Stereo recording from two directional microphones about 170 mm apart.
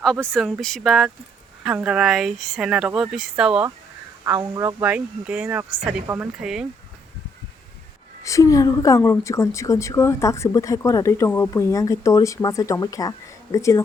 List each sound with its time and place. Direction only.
0.0 s speech: 5° left (ahead or behind)
4.4 s speech: 20° right (ahead or behind)
4.8 s speech: 5° right (ahead or behind)
8.2 s a woman's voice: 20° left (ahead or behind)